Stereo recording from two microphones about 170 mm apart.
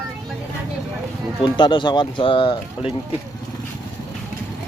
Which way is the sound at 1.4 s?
25° left (ahead or behind).